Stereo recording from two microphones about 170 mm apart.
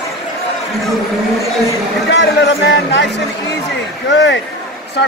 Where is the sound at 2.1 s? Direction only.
90° left.